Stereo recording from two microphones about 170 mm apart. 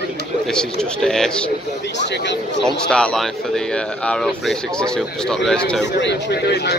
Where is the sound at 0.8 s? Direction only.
5° left (ahead or behind).